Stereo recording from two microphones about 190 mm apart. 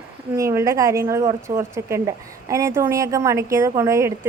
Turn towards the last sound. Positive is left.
turn(degrees=-15)  # may be behind; listen again after turning